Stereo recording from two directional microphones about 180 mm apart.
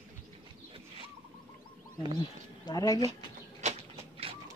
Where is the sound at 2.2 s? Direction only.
20° left (ahead or behind).